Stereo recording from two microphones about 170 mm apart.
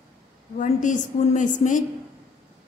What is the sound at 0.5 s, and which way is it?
A woman's voice, 50° left (ahead or behind).